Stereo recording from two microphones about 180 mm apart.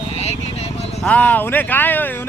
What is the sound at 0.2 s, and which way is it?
Vehicle, 35° left (ahead or behind).